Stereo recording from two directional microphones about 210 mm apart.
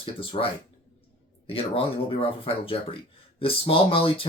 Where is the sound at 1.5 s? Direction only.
25° left (ahead or behind).